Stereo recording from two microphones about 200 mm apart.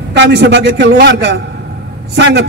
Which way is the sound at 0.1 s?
60° right (ahead or behind).